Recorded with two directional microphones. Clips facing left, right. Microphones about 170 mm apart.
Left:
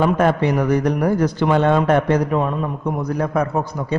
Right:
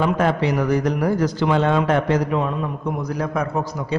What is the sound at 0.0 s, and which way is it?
A man's voice, 50° left (ahead or behind).